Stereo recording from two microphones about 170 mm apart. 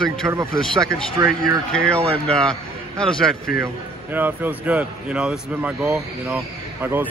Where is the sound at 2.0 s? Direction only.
35° right (ahead or behind).